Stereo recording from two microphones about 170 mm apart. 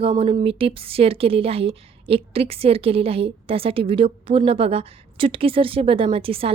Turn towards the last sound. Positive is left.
turn(degrees=-35)  # may be behind; listen again after turning